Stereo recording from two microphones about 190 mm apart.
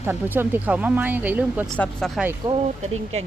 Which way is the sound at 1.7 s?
5° left (ahead or behind).